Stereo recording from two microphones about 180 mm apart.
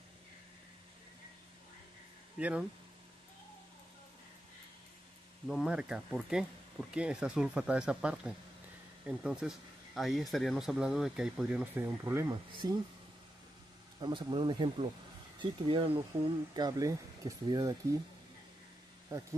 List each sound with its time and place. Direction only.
2.3 s speech: 5° right (ahead or behind)
5.5 s speech: 5° right (ahead or behind); by 12.8 s 20° right (ahead or behind)
14.0 s speech: 25° right (ahead or behind)
16.5 s speech: 20° right (ahead or behind)
19.1 s speech: 20° right (ahead or behind)